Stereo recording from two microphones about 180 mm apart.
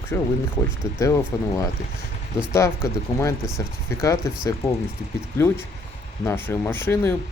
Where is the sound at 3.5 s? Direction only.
20° left (ahead or behind).